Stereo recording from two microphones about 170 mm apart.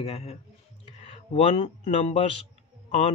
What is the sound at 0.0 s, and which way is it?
Speech, 35° left (ahead or behind).